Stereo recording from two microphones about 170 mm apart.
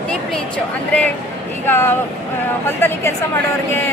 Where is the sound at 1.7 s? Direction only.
15° left (ahead or behind).